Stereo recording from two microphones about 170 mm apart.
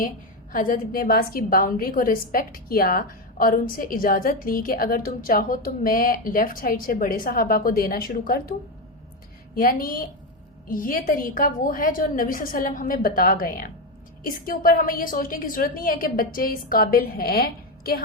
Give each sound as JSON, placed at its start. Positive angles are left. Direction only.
{"t": 0.5, "sound": "a woman's voice", "side_deg": 55}
{"t": 9.6, "sound": "a woman's voice", "side_deg": 60}